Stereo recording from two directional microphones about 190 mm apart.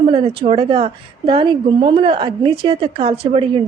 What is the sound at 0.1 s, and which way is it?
A woman's voice, 30° right (ahead or behind).